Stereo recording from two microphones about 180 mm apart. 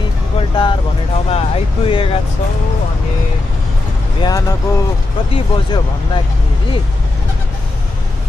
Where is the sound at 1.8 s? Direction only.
30° left (ahead or behind).